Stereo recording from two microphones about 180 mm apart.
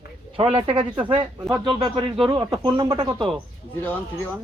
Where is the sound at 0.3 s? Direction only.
30° right (ahead or behind).